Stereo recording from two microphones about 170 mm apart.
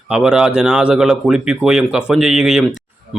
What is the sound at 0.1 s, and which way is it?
A man's voice, 5° right (ahead or behind).